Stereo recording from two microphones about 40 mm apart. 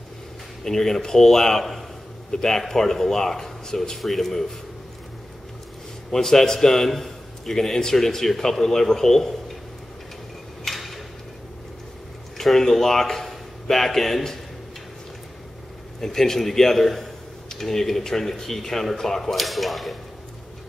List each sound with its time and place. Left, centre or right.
0.7 s speech: centre
6.1 s speech: centre
10.6 s tick-tock: centre
12.4 s speech: centre
16.0 s speech: centre